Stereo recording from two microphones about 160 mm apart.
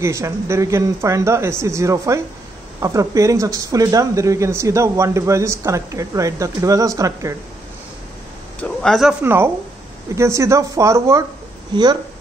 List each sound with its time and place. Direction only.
0.0 s speech: 20° right (ahead or behind)
8.5 s speech: 5° left (ahead or behind)
9.2 s speech: 15° right (ahead or behind)